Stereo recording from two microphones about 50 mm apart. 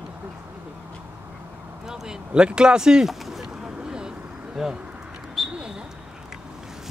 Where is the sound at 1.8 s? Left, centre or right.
Centre.